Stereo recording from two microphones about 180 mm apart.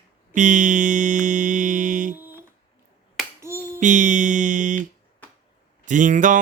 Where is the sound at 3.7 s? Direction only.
45° right (ahead or behind).